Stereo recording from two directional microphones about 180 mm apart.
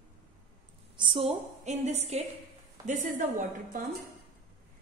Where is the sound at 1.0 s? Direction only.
30° right (ahead or behind); by 3.2 s 45° right (ahead or behind).